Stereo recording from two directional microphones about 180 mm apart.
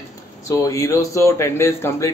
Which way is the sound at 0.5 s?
15° left (ahead or behind).